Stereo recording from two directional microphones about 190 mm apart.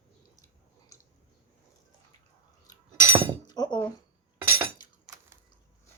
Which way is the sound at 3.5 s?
25° left (ahead or behind).